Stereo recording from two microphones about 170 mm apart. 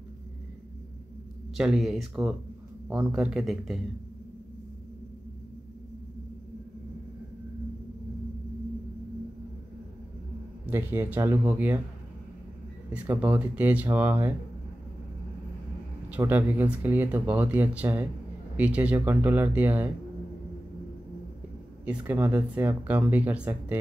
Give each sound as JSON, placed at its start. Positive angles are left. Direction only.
{"t": 1.6, "sound": "speech", "side_deg": 0}
{"t": 10.7, "sound": "speech", "side_deg": -10}
{"t": 12.9, "sound": "speech", "side_deg": -10}
{"t": 16.2, "sound": "speech", "side_deg": -10}
{"t": 21.8, "sound": "speech", "side_deg": -10}